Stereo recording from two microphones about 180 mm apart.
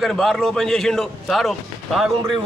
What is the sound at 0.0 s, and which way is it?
A man's voice, centre (ahead or behind).